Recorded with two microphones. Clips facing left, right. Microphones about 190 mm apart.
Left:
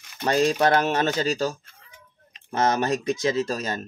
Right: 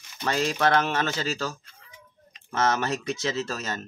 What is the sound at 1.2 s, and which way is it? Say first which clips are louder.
Speech: left 5 dB; 40° left (ahead or behind).